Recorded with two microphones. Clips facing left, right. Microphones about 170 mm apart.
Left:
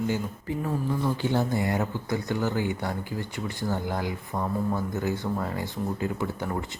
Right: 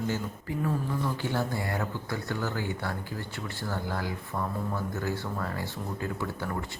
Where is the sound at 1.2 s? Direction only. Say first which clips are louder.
Left 5 dB; 20° left (ahead or behind).